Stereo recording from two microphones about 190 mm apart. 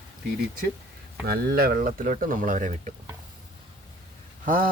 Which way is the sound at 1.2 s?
55° right (ahead or behind).